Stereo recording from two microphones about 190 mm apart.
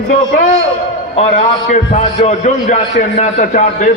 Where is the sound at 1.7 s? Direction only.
35° left (ahead or behind).